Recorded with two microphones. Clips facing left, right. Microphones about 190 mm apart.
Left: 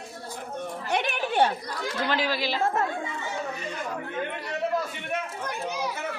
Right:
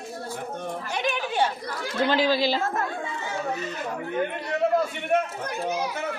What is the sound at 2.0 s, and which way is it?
Speech, 30° right (ahead or behind).